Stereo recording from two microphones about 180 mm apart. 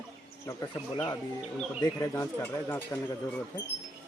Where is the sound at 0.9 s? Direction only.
20° left (ahead or behind).